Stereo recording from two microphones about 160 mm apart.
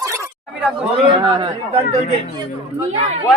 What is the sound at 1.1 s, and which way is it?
Speech, 30° right (ahead or behind).